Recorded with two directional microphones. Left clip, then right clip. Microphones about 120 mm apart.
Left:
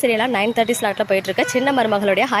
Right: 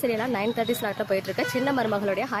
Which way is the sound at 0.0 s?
20° left (ahead or behind).